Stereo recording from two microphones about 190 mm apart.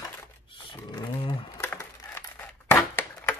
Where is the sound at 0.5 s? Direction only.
25° left (ahead or behind).